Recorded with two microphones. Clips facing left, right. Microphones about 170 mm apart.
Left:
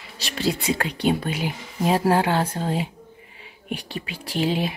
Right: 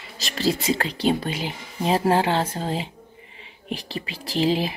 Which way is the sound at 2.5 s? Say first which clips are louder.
Left 2 dB; centre (ahead or behind).